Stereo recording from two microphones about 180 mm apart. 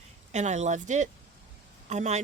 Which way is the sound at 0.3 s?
40° right (ahead or behind).